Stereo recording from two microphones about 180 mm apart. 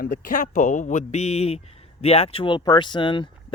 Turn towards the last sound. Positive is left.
turn(degrees=25)  # may be behind; listen again after turning